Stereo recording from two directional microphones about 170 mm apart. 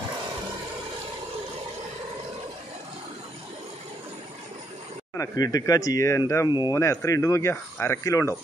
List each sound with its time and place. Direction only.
5.1 s speech: 20° left (ahead or behind)